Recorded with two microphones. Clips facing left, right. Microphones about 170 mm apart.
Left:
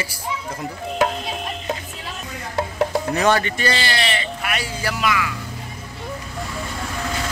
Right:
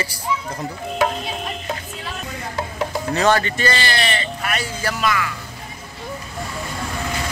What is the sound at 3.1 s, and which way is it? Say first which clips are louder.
Speech: right 2 dB; 10° left (ahead or behind).